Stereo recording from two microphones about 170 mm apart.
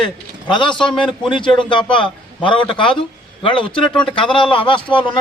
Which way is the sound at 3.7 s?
5° left (ahead or behind).